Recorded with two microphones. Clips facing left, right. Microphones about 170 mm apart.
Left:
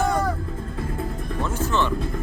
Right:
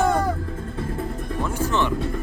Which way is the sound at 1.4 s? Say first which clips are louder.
Right 1 dB; 10° right (ahead or behind).